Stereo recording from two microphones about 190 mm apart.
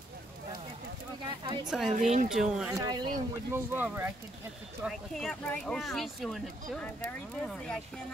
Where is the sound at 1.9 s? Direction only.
40° right (ahead or behind).